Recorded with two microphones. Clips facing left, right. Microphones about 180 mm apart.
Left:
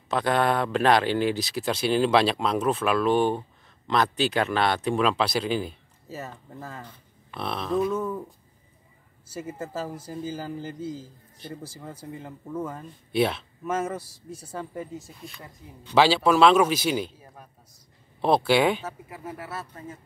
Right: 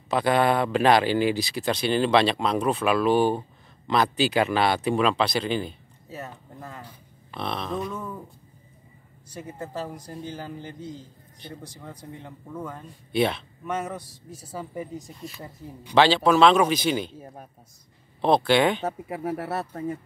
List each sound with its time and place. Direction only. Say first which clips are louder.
0.1 s speech: right 2 dB; centre (ahead or behind)
9.3 s speech: left 2 dB; 5° left (ahead or behind)
18.2 s speech: right 1 dB; 5° left (ahead or behind)
18.8 s speech: right 8 dB; 65° right (ahead or behind)